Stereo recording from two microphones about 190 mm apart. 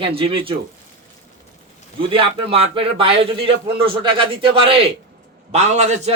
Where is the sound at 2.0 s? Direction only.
30° right (ahead or behind).